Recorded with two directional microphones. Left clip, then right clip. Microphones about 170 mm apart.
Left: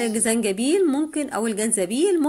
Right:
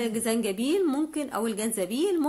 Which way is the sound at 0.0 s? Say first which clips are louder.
Left 5 dB; 15° left (ahead or behind).